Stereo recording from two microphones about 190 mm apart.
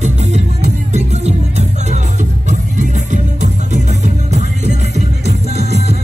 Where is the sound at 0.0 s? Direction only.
35° right (ahead or behind).